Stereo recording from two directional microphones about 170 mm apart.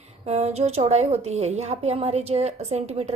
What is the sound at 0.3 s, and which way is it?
A woman's voice, 40° right (ahead or behind).